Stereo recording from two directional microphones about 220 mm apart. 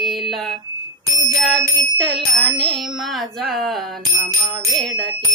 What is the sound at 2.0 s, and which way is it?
Bicycle bell, centre (ahead or behind).